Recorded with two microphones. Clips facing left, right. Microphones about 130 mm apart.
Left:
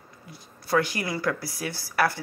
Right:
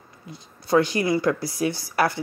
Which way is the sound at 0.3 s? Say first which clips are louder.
Right 5 dB; 25° right (ahead or behind).